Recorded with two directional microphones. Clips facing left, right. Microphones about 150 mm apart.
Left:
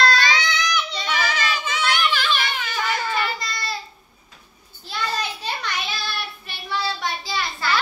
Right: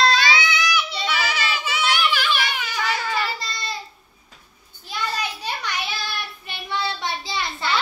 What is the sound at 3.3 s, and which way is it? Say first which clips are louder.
Babbling: left 1 dB; 25° right (ahead or behind).